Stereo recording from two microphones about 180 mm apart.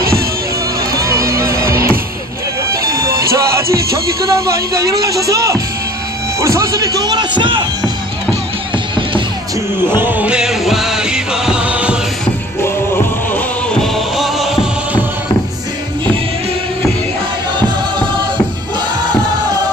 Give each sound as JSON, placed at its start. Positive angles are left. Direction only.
{"t": 0.9, "sound": "music", "side_deg": -15}
{"t": 2.8, "sound": "bagpipes", "side_deg": -60}
{"t": 4.3, "sound": "speech", "side_deg": -15}
{"t": 9.9, "sound": "music", "side_deg": -10}
{"t": 12.6, "sound": "music", "side_deg": 10}